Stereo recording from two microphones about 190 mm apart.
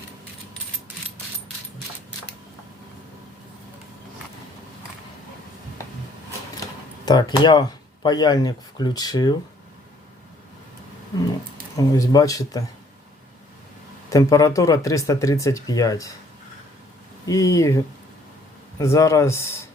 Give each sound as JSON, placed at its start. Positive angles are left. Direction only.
{"t": 7.0, "sound": "speech", "side_deg": 20}
{"t": 11.8, "sound": "speech", "side_deg": 20}
{"t": 14.1, "sound": "speech", "side_deg": 15}
{"t": 17.2, "sound": "speech", "side_deg": 15}